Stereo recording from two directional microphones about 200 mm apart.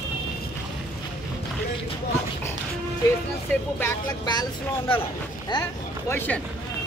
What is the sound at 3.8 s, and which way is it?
Speech, 20° left (ahead or behind).